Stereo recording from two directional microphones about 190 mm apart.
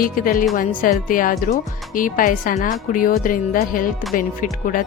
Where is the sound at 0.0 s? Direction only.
45° left (ahead or behind).